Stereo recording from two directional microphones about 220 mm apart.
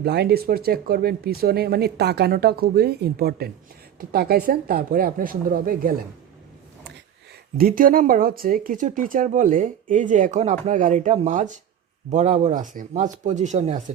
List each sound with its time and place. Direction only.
0.0 s speech: 45° right (ahead or behind)
7.6 s speech: 40° right (ahead or behind)